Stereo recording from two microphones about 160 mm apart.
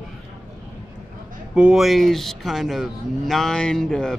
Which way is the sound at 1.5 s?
5° right (ahead or behind).